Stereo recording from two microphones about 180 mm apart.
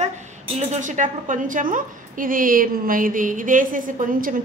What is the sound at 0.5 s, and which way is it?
A woman's voice, 40° right (ahead or behind).